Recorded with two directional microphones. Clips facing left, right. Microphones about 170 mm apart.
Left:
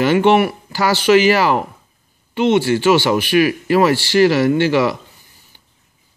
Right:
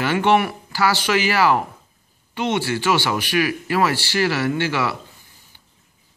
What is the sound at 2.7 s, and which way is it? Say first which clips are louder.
Speech: left 7 dB; 20° left (ahead or behind).